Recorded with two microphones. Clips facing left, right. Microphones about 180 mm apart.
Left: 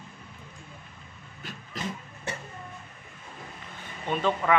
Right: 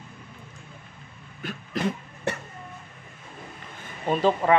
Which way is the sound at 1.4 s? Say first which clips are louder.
Right 8 dB; 60° right (ahead or behind).